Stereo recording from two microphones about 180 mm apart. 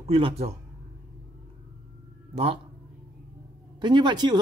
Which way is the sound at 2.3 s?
30° right (ahead or behind).